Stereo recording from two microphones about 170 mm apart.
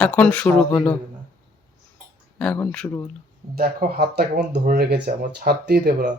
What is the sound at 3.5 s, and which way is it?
Speech, 60° right (ahead or behind).